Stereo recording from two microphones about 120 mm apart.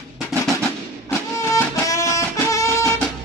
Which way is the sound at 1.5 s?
25° left (ahead or behind).